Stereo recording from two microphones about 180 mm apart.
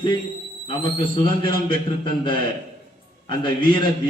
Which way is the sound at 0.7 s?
25° left (ahead or behind).